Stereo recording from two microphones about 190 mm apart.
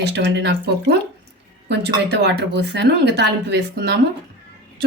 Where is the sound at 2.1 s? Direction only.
65° right (ahead or behind).